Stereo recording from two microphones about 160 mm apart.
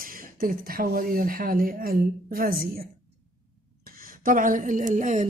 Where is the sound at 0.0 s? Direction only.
60° right (ahead or behind).